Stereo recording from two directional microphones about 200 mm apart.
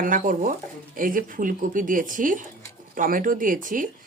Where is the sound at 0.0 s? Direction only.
40° right (ahead or behind).